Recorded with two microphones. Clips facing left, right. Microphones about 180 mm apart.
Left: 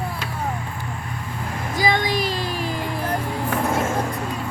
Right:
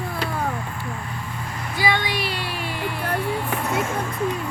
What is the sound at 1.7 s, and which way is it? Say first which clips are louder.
Music: left 2 dB; 40° left (ahead or behind).